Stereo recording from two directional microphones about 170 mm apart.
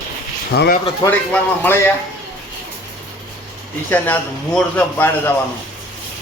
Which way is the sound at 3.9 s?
10° left (ahead or behind).